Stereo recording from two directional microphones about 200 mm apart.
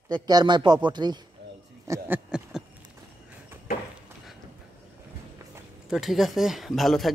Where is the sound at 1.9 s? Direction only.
5° right (ahead or behind).